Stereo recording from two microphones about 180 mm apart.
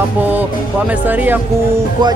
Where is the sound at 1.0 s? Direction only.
10° right (ahead or behind).